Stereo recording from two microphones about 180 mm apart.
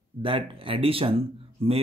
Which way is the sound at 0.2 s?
30° right (ahead or behind).